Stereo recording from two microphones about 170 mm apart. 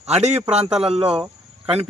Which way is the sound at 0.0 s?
40° right (ahead or behind).